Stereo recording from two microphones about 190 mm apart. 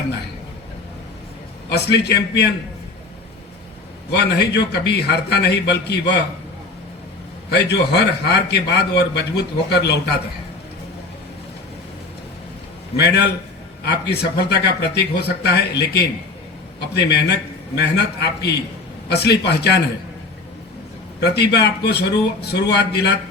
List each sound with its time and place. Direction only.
1.7 s a man's voice: 60° left (ahead or behind)
4.1 s a man's voice: 60° left (ahead or behind)
7.5 s a man's voice: 60° left (ahead or behind)
13.0 s a man's voice: 60° left (ahead or behind)
21.2 s a man's voice: 60° left (ahead or behind)